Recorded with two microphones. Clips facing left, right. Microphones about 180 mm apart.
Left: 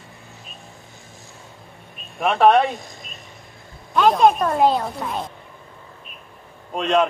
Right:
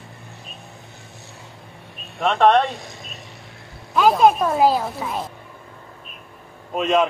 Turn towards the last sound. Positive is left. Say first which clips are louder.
# even
turn(degrees=0)  # may be behind; listen again after turning